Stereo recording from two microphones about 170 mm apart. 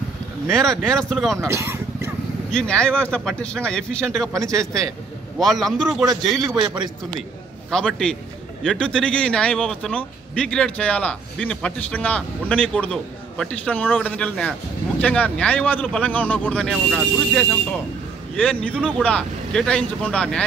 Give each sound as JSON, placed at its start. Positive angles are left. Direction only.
{"t": 0.6, "sound": "speech", "side_deg": 5}
{"t": 1.5, "sound": "a sound", "side_deg": -15}
{"t": 2.5, "sound": "speech", "side_deg": 5}
{"t": 5.4, "sound": "speech", "side_deg": 0}
{"t": 6.5, "sound": "a man's voice", "side_deg": -25}
{"t": 7.7, "sound": "a man's voice", "side_deg": 5}